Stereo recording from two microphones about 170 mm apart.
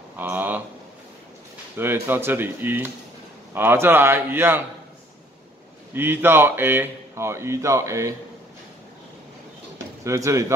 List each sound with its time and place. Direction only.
0.2 s a sound: 10° right (ahead or behind)
1.8 s a man's voice: 15° right (ahead or behind)
5.9 s a man's voice: 10° right (ahead or behind)
10.0 s a man's voice: 15° right (ahead or behind)